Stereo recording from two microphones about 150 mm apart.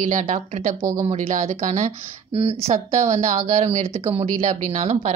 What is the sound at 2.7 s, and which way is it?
A woman's voice, 55° right (ahead or behind).